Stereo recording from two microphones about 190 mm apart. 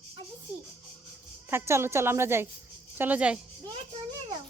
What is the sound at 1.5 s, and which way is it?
Speech, 15° right (ahead or behind).